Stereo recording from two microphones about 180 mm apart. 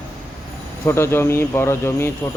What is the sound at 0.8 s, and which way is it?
Speech, 15° left (ahead or behind).